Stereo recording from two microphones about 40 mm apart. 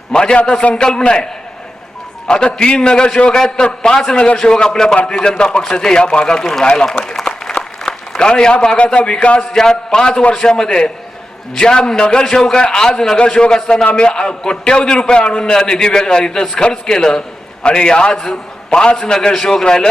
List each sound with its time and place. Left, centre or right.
0.1 s a man's voice: left
2.3 s a man's voice: left
7.3 s applause: centre
8.2 s a man's voice: left